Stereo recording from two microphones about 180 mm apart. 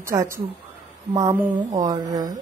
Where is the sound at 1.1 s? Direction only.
20° right (ahead or behind).